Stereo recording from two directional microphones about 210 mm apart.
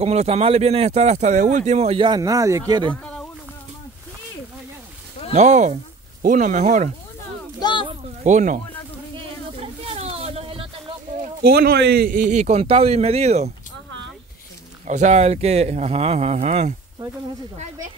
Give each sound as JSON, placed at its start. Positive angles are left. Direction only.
{"t": 0.0, "sound": "speech", "side_deg": -30}
{"t": 2.9, "sound": "a sound", "side_deg": 5}
{"t": 5.3, "sound": "a man's voice", "side_deg": -35}
{"t": 7.8, "sound": "a sound", "side_deg": -30}
{"t": 11.4, "sound": "a man's voice", "side_deg": -50}
{"t": 14.9, "sound": "a man's voice", "side_deg": -35}